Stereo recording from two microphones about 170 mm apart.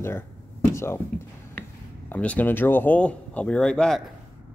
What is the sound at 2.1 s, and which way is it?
Speech, 10° left (ahead or behind).